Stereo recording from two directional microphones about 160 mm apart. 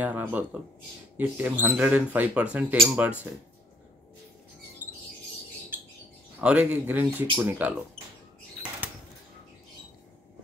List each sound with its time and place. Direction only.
0.0 s speech: 10° right (ahead or behind)
6.4 s speech: 10° right (ahead or behind)